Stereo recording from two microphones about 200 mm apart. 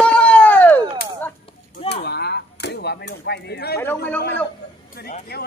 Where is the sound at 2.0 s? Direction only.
55° left (ahead or behind).